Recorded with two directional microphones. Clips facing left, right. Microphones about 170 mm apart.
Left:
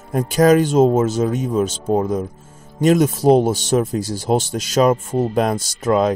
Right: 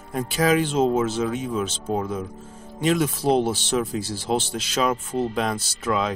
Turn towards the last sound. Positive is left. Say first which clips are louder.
# left 8 dB
turn(degrees=45)  # may be behind; listen again after turning